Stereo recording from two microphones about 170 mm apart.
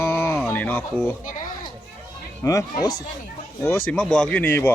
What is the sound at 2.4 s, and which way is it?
A child's voice, 20° left (ahead or behind).